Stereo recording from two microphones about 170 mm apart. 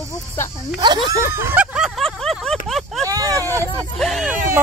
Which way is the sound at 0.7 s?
25° right (ahead or behind).